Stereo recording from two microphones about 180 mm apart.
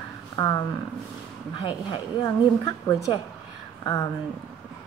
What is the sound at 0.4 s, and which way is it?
A woman's voice, 20° left (ahead or behind).